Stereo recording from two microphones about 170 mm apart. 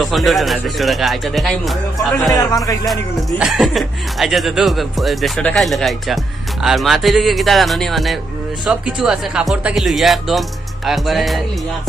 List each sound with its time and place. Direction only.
0.0 s speech: centre (ahead or behind)
2.3 s music: 20° left (ahead or behind)
2.9 s speech: centre (ahead or behind)